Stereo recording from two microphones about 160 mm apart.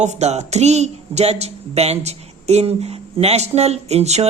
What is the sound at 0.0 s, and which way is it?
Speech, 45° right (ahead or behind).